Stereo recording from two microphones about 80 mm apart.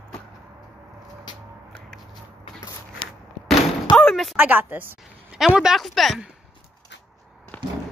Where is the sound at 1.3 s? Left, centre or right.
Left.